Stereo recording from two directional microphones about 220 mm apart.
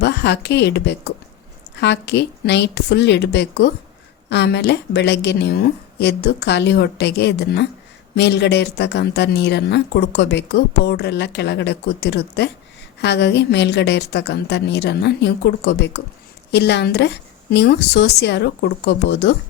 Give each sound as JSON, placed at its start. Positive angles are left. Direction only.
{"t": 0.0, "sound": "speech", "side_deg": 50}